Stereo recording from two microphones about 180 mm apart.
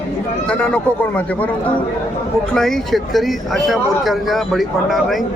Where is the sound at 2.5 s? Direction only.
Centre (ahead or behind).